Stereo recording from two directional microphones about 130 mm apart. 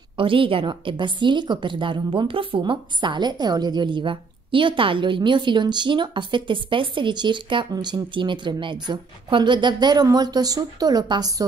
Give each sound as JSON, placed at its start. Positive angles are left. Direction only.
{"t": 0.2, "sound": "a woman's voice", "side_deg": -45}